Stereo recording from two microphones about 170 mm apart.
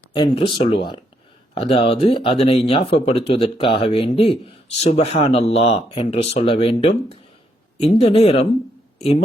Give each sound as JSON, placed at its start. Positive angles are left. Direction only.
{"t": 0.1, "sound": "speech", "side_deg": 30}